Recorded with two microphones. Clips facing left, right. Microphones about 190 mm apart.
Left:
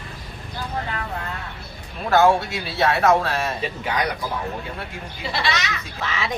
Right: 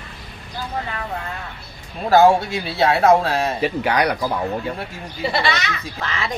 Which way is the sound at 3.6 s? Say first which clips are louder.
Right 6 dB; 70° right (ahead or behind).